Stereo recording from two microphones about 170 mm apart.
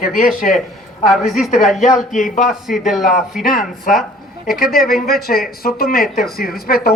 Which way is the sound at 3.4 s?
55° left (ahead or behind).